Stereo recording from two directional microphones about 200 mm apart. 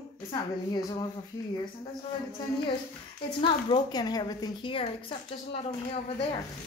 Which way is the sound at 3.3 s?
25° left (ahead or behind).